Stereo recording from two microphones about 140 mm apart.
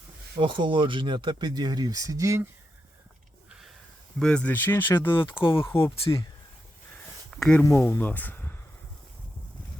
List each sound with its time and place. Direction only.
0.3 s speech: 35° right (ahead or behind)
4.2 s speech: 5° left (ahead or behind)
7.3 s speech: 5° left (ahead or behind)
7.6 s speech: 15° left (ahead or behind)